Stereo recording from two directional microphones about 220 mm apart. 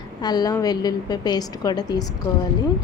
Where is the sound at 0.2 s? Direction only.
20° left (ahead or behind).